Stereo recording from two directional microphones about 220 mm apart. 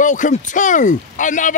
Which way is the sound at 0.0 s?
35° left (ahead or behind).